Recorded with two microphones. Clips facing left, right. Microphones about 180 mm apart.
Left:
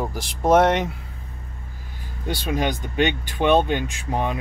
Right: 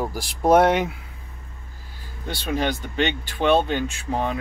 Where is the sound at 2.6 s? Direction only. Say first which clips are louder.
Left 1 dB; 15° left (ahead or behind).